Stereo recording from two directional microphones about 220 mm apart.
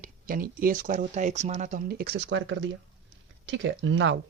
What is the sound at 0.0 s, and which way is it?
Speech, 40° right (ahead or behind).